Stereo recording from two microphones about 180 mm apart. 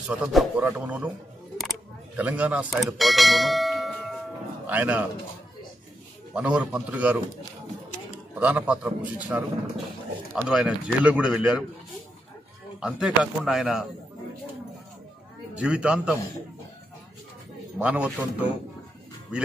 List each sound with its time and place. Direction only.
0.1 s speech: 5° right (ahead or behind)
2.1 s speech: 10° right (ahead or behind)
3.0 s bell: centre (ahead or behind)
4.6 s speech: 10° right (ahead or behind)
6.3 s speech: 5° right (ahead or behind)
8.4 s speech: 5° right (ahead or behind)
12.8 s speech: 5° right (ahead or behind)
15.5 s speech: 5° right (ahead or behind)
17.7 s speech: 5° right (ahead or behind)